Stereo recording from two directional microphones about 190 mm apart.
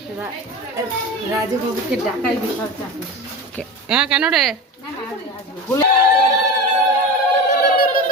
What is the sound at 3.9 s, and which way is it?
Speech, 5° right (ahead or behind).